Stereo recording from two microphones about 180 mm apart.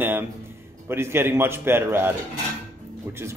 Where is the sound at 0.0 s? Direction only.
10° right (ahead or behind).